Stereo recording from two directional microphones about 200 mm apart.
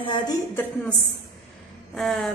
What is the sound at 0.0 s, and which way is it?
Speech, 25° left (ahead or behind).